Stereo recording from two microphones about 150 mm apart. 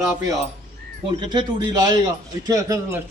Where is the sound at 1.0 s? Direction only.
30° right (ahead or behind).